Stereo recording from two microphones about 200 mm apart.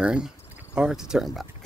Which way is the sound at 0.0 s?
5° right (ahead or behind).